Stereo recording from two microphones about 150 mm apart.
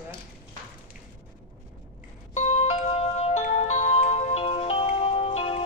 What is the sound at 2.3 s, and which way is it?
Music, 50° left (ahead or behind).